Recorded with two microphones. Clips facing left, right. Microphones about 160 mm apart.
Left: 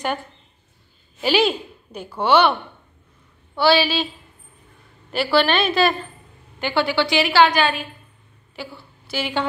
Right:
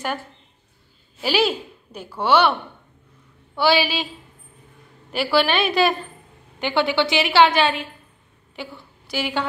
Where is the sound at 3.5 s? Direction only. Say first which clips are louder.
Left 2 dB; 15° right (ahead or behind).